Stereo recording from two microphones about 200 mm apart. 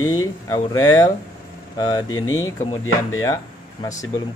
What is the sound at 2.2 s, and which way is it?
Speech, 15° left (ahead or behind).